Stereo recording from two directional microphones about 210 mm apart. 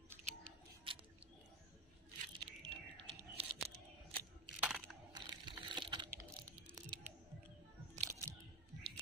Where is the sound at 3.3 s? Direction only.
30° right (ahead or behind).